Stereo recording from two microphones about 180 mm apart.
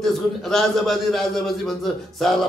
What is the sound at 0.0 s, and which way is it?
A man's voice, centre (ahead or behind).